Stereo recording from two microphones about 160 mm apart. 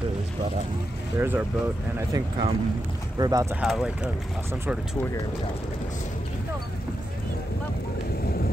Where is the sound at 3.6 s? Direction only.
5° right (ahead or behind).